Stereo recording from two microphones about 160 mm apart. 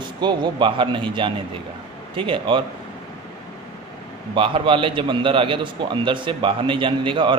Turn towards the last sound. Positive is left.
turn(degrees=-30)  # may be behind; listen again after turning